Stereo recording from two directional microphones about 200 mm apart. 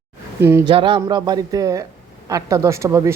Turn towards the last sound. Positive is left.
turn(degrees=-15)  # may be behind; listen again after turning